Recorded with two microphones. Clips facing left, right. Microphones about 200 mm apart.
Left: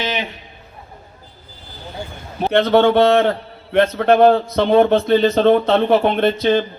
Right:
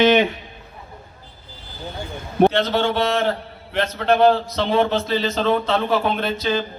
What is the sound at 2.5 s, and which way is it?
A man's voice, 60° left (ahead or behind).